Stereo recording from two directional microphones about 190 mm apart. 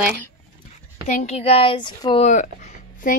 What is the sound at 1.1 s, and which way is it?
Speech, 35° left (ahead or behind).